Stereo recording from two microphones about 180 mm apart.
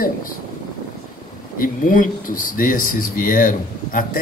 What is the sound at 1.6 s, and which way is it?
Speech, 50° left (ahead or behind).